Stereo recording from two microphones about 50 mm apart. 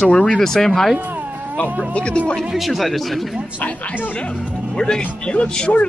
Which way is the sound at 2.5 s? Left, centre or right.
Centre.